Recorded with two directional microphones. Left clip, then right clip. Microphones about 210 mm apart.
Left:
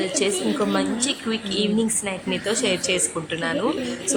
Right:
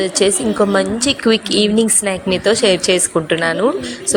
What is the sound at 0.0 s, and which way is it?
A woman's voice, 25° right (ahead or behind).